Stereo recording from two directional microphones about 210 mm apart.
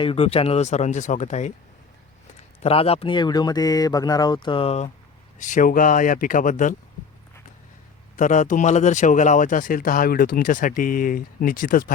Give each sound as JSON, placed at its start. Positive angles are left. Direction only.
{"t": 0.0, "sound": "speech", "side_deg": 25}
{"t": 2.6, "sound": "speech", "side_deg": 30}
{"t": 8.1, "sound": "speech", "side_deg": 35}